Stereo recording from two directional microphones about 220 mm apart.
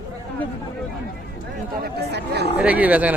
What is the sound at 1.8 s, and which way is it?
Speech, 50° right (ahead or behind).